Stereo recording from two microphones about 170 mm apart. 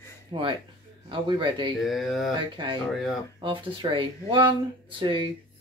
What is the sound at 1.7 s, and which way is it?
Speech, centre (ahead or behind).